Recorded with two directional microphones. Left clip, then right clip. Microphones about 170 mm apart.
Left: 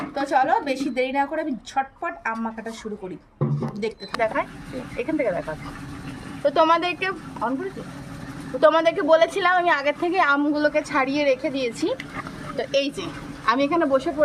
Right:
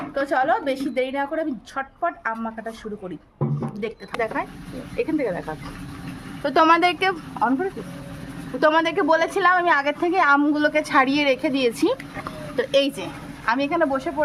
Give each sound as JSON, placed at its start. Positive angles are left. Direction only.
{"t": 0.1, "sound": "a woman's voice", "side_deg": -10}
{"t": 3.8, "sound": "a woman's voice", "side_deg": -5}
{"t": 4.9, "sound": "speech", "side_deg": -45}
{"t": 6.4, "sound": "a woman's voice", "side_deg": -75}
{"t": 8.6, "sound": "a woman's voice", "side_deg": -40}
{"t": 10.6, "sound": "a woman's voice", "side_deg": -50}
{"t": 12.5, "sound": "a woman's voice", "side_deg": -55}
{"t": 13.4, "sound": "a woman's voice", "side_deg": -10}